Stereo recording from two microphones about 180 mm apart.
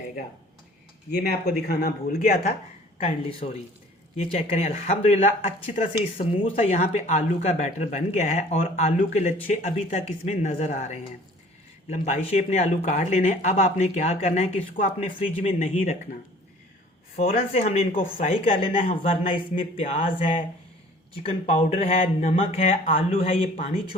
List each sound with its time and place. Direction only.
1.1 s speech: 65° left (ahead or behind)
3.0 s speech: 30° left (ahead or behind)
5.8 s speech: 30° left (ahead or behind)
17.2 s speech: 35° left (ahead or behind)
21.2 s speech: 35° left (ahead or behind)